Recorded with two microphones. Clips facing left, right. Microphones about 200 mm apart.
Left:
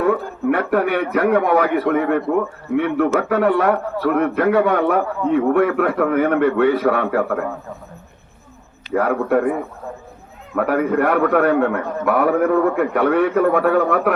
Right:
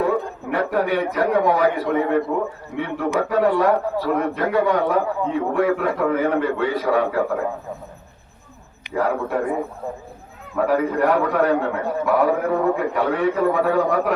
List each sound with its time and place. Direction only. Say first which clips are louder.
0.5 s a man's voice: left 1 dB; 60° left (ahead or behind)
9.0 s a man's voice: left 4 dB; 60° left (ahead or behind)
10.5 s a man's voice: left 2 dB; 60° left (ahead or behind)